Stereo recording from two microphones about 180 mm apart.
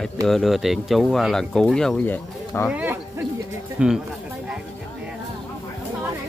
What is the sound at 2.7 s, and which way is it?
Speech, 10° right (ahead or behind).